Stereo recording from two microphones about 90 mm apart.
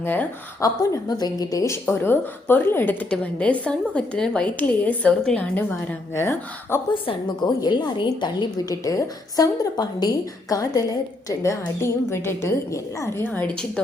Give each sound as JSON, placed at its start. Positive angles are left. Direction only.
{"t": 0.0, "sound": "speech", "side_deg": 20}
{"t": 0.6, "sound": "a woman's voice", "side_deg": 45}
{"t": 6.1, "sound": "speech", "side_deg": 25}
{"t": 6.9, "sound": "a woman's voice", "side_deg": 65}
{"t": 8.7, "sound": "a woman's voice", "side_deg": 35}
{"t": 11.3, "sound": "speech", "side_deg": 35}
{"t": 13.2, "sound": "speech", "side_deg": 20}